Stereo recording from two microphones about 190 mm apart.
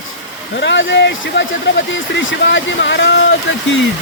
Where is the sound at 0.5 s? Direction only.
70° left (ahead or behind).